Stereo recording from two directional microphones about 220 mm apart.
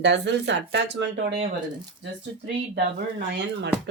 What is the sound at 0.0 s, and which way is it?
Speech, 55° right (ahead or behind).